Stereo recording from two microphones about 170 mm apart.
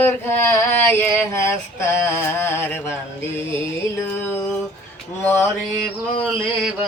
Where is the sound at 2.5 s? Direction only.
15° left (ahead or behind).